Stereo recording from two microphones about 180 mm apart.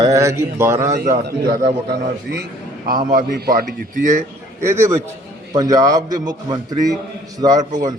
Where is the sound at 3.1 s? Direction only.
55° right (ahead or behind).